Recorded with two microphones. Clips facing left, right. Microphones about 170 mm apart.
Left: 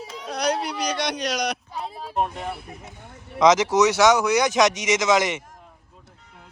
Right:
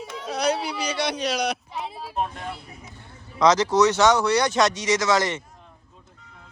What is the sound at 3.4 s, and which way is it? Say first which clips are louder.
Speech: left 1 dB; 20° left (ahead or behind).